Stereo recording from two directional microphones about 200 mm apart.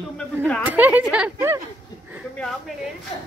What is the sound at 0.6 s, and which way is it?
Speech, 10° right (ahead or behind).